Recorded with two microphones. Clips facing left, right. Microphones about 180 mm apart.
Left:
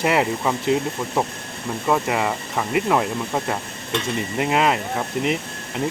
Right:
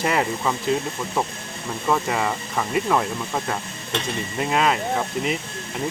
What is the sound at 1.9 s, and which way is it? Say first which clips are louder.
Speech: left 2 dB; 10° left (ahead or behind).